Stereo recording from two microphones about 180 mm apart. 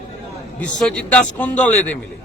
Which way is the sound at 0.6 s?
5° left (ahead or behind).